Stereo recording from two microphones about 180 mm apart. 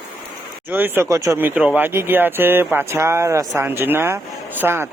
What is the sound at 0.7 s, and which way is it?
Speech, 10° right (ahead or behind).